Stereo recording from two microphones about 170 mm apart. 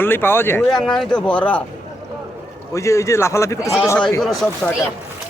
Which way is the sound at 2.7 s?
20° left (ahead or behind).